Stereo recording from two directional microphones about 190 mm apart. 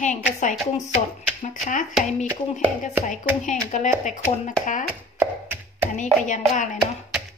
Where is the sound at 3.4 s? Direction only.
40° left (ahead or behind).